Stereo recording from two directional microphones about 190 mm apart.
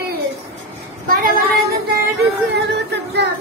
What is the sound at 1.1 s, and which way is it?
Speech, 55° right (ahead or behind).